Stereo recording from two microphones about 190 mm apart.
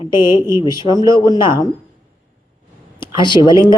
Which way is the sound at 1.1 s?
25° left (ahead or behind).